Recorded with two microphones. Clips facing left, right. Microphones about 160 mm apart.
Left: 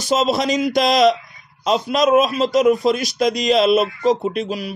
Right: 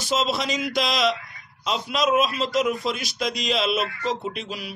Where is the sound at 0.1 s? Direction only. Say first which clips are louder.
Left 7 dB; 40° left (ahead or behind).